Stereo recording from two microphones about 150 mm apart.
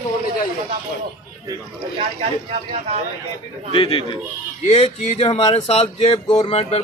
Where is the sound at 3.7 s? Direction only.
40° left (ahead or behind).